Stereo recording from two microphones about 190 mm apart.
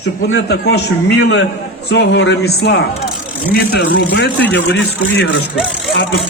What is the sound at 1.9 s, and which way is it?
A man's voice, 65° left (ahead or behind).